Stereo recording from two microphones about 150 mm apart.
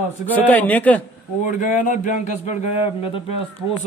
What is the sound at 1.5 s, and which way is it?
Speech, 60° left (ahead or behind).